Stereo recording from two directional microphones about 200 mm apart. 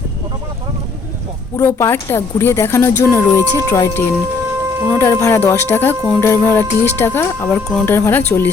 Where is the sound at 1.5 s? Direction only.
15° left (ahead or behind).